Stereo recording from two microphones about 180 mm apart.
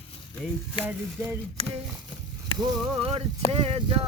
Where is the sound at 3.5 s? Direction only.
35° right (ahead or behind).